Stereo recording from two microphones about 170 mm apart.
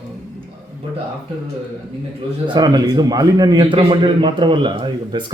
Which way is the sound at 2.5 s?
25° right (ahead or behind).